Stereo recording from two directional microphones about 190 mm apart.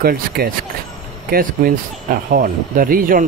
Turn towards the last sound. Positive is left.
turn(degrees=-45)  # may be behind; listen again after turning